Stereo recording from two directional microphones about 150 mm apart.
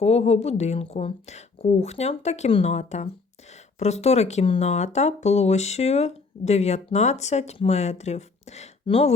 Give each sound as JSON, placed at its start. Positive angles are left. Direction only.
{"t": 0.0, "sound": "speech", "side_deg": 45}